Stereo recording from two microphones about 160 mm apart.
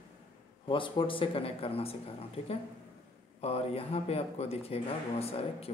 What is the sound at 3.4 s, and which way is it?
Speech, 40° left (ahead or behind).